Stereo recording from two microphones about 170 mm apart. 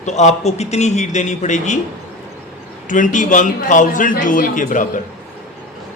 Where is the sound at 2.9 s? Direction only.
50° left (ahead or behind).